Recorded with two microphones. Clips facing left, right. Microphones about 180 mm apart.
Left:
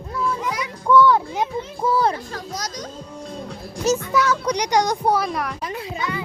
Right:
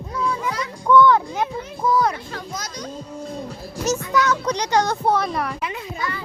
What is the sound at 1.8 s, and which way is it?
Music, 30° left (ahead or behind).